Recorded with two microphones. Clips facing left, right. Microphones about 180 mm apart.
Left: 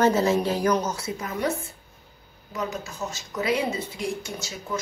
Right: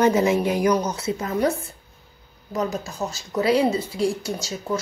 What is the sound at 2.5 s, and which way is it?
Speech, 35° right (ahead or behind).